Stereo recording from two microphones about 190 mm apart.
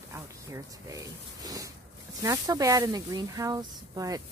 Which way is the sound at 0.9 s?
20° right (ahead or behind).